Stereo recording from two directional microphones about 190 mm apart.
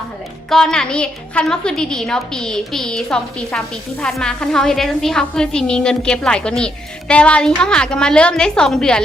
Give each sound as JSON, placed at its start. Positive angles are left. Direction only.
{"t": 0.5, "sound": "a woman's voice", "side_deg": 5}